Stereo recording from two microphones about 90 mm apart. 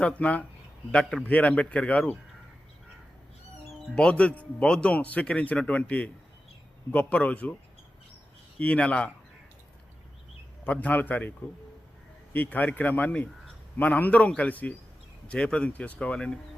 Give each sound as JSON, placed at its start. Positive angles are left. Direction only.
{"t": 0.2, "sound": "speech", "side_deg": 15}
{"t": 3.9, "sound": "speech", "side_deg": 10}
{"t": 8.5, "sound": "speech", "side_deg": 15}
{"t": 10.6, "sound": "a man's voice", "side_deg": 15}